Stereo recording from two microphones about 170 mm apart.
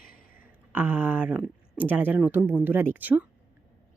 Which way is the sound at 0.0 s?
55° left (ahead or behind).